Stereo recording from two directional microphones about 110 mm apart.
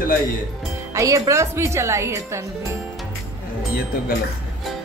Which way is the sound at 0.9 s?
30° right (ahead or behind).